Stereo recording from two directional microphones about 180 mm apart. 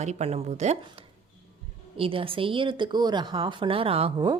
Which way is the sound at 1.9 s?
30° right (ahead or behind).